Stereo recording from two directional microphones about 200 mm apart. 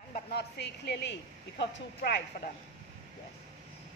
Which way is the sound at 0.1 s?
55° left (ahead or behind).